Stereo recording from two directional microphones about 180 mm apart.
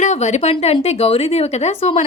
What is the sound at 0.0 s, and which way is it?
A woman's voice, 40° left (ahead or behind).